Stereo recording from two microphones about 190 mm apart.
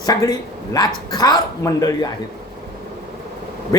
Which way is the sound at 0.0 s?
20° left (ahead or behind).